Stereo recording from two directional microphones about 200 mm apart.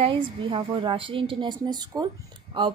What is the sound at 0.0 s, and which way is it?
A woman's voice, 25° right (ahead or behind).